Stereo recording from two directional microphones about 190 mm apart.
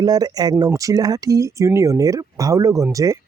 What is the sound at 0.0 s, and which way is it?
Speech, 20° right (ahead or behind).